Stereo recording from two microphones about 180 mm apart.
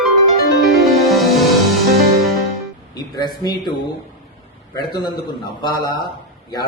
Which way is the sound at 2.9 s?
25° left (ahead or behind).